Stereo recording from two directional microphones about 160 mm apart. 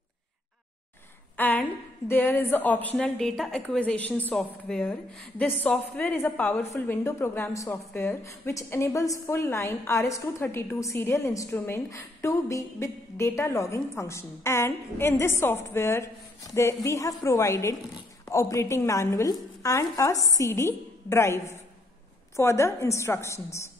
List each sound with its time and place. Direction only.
1.3 s a woman's voice: 10° left (ahead or behind)